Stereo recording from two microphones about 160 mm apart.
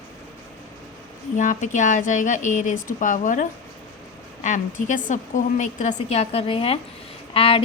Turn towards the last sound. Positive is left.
turn(degrees=35)  # may be behind; listen again after turning